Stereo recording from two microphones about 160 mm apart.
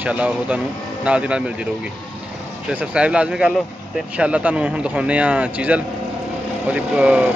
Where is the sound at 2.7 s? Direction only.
5° right (ahead or behind).